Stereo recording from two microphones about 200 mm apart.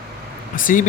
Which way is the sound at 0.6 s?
40° left (ahead or behind).